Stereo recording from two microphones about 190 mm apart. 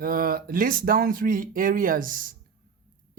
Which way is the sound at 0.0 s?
50° right (ahead or behind).